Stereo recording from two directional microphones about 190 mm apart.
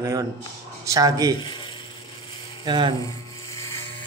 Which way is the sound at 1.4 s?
25° left (ahead or behind).